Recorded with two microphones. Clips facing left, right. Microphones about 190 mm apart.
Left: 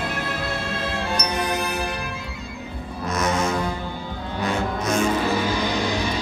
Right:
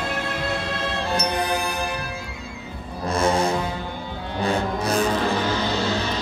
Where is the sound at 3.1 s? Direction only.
30° right (ahead or behind).